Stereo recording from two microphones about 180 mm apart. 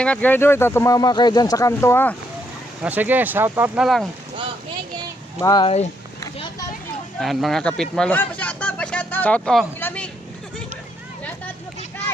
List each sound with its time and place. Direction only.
0.0 s speech: 5° left (ahead or behind)
2.8 s speech: 10° right (ahead or behind)
5.4 s speech: 20° left (ahead or behind)
5.6 s speech: 35° left (ahead or behind)
7.2 s speech: centre (ahead or behind)